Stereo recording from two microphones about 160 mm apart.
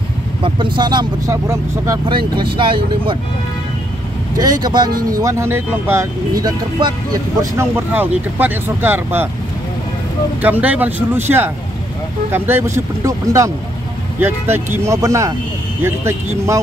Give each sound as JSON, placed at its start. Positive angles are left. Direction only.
{"t": 0.4, "sound": "speech", "side_deg": -30}
{"t": 2.0, "sound": "speech", "side_deg": -30}
{"t": 4.4, "sound": "speech", "side_deg": -25}
{"t": 7.5, "sound": "speech", "side_deg": -15}
{"t": 10.4, "sound": "speech", "side_deg": -10}